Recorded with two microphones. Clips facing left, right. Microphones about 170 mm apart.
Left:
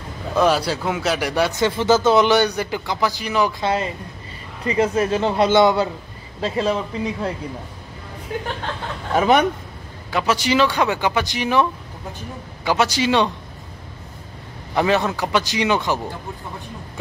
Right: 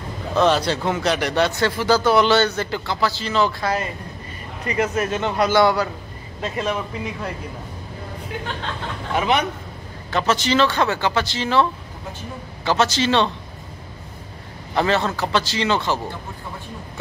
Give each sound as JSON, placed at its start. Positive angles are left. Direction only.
{"t": 0.3, "sound": "speech", "side_deg": 10}
{"t": 3.6, "sound": "speech", "side_deg": 25}
{"t": 9.1, "sound": "speech", "side_deg": 45}
{"t": 10.1, "sound": "speech", "side_deg": 10}
{"t": 12.6, "sound": "speech", "side_deg": 10}
{"t": 14.8, "sound": "speech", "side_deg": 15}